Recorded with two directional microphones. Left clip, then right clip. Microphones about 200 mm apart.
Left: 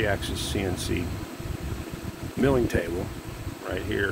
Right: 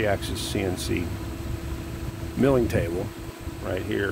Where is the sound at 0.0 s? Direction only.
15° right (ahead or behind).